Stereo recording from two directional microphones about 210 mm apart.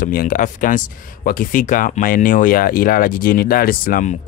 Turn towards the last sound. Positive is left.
turn(degrees=40)  # may be behind; listen again after turning